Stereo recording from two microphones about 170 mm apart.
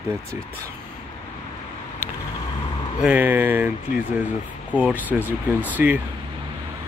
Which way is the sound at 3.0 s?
10° right (ahead or behind).